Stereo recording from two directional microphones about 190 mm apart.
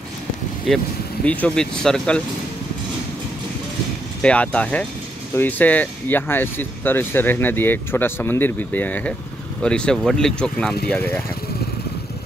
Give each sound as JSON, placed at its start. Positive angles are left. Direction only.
{"t": 0.7, "sound": "speech", "side_deg": 0}
{"t": 4.2, "sound": "speech", "side_deg": 5}